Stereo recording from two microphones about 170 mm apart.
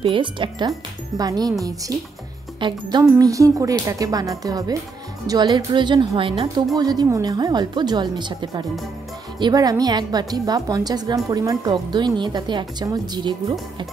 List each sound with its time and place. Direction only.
0.0 s a woman's voice: 30° right (ahead or behind)